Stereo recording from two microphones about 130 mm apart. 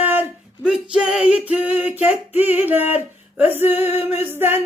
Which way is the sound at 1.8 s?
10° right (ahead or behind).